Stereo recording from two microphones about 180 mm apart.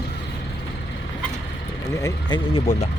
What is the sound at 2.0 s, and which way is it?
Speech, 25° left (ahead or behind).